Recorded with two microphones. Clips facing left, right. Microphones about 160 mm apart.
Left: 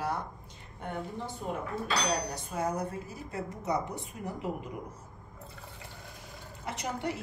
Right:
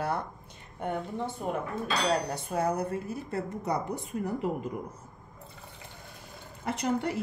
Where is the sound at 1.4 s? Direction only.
60° right (ahead or behind).